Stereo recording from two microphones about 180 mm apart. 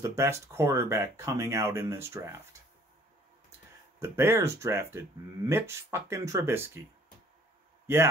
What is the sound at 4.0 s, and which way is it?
Speech, 15° right (ahead or behind).